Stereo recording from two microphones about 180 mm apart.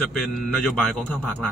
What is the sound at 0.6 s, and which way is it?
Speech, 5° left (ahead or behind).